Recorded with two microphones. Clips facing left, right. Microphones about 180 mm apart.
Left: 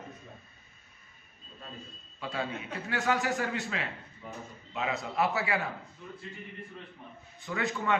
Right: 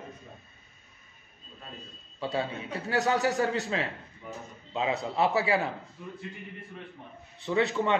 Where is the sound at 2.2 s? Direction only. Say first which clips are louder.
Right 4 dB; 30° right (ahead or behind).